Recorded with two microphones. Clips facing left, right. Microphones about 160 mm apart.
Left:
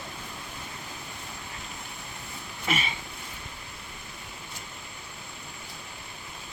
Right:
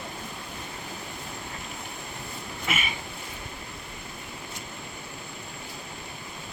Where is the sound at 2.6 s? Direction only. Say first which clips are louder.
Left 2 dB; 35° left (ahead or behind).